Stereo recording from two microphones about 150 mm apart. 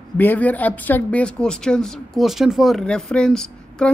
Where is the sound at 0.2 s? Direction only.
10° left (ahead or behind).